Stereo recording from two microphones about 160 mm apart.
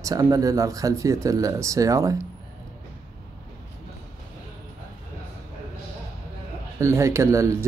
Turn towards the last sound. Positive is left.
turn(degrees=-20)  # may be behind; listen again after turning